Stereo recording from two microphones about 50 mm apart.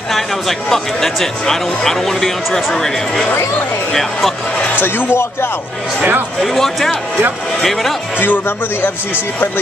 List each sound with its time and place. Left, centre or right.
0.1 s speech: centre
4.7 s speech: left
6.4 s speech: centre
8.2 s speech: left